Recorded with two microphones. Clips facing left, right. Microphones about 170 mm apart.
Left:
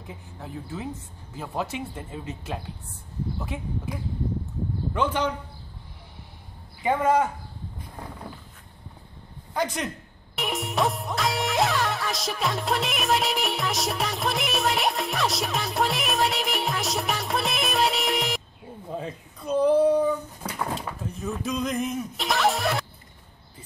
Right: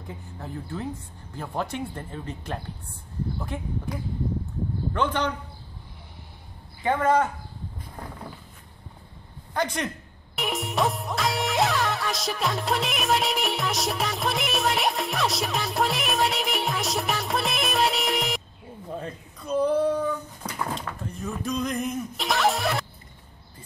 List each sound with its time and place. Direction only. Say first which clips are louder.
0.0 s speech: right 2 dB; 5° left (ahead or behind)
4.9 s a man's voice: left 1 dB; 5° left (ahead or behind)
6.8 s a man's voice: even; 10° left (ahead or behind)
9.5 s a man's voice: even; 5° left (ahead or behind)
10.3 s music: even; centre (ahead or behind)
18.9 s a sound: left 3 dB; centre (ahead or behind)